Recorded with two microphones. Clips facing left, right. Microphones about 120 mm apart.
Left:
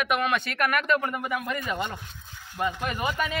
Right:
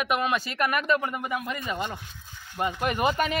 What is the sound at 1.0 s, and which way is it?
Speech, 15° right (ahead or behind).